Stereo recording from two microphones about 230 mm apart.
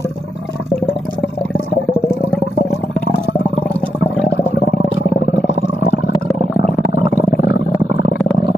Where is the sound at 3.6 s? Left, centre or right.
Centre.